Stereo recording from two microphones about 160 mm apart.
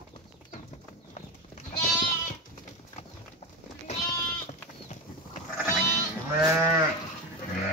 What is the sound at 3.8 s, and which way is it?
Sheep, 45° left (ahead or behind).